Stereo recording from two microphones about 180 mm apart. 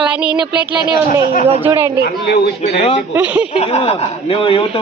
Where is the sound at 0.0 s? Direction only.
5° right (ahead or behind).